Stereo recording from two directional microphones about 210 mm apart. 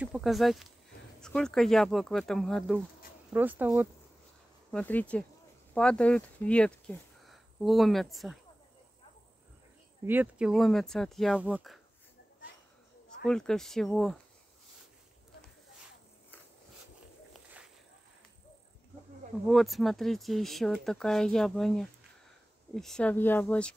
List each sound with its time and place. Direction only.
0.0 s speech: centre (ahead or behind)
4.6 s speech: 5° left (ahead or behind)
10.0 s speech: 5° right (ahead or behind)
13.2 s speech: 5° left (ahead or behind)
19.4 s speech: centre (ahead or behind)